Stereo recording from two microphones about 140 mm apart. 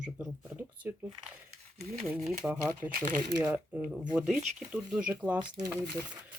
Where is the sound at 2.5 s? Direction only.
15° right (ahead or behind).